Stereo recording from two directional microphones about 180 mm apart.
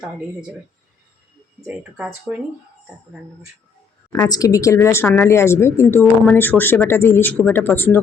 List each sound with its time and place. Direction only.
1.6 s speech: 10° right (ahead or behind)
4.3 s a woman's voice: 20° left (ahead or behind)